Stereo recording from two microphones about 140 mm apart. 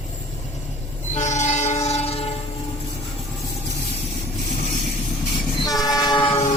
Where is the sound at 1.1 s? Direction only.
55° left (ahead or behind).